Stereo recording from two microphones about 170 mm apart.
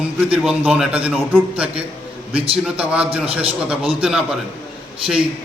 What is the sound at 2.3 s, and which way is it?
Speech, 35° right (ahead or behind).